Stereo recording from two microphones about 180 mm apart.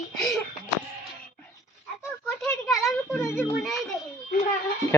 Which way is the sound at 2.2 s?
5° left (ahead or behind).